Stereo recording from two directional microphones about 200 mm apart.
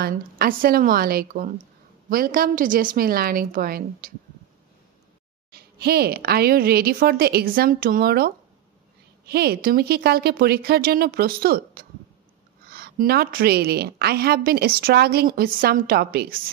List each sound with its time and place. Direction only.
0.0 s a woman's voice: 45° right (ahead or behind)
5.5 s a woman's voice: 50° right (ahead or behind)